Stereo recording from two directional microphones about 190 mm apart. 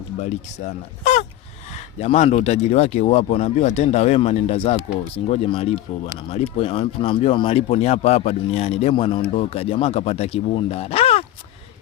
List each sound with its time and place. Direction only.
0.2 s speech: 40° left (ahead or behind)